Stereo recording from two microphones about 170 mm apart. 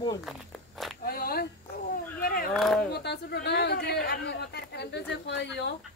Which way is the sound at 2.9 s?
70° left (ahead or behind).